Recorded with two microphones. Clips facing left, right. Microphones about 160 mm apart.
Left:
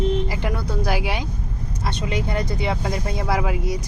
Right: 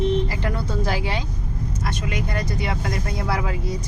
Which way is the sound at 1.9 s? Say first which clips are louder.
Left 4 dB; 25° left (ahead or behind).